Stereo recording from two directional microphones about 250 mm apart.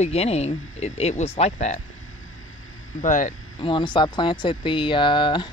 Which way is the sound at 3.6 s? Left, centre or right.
Centre.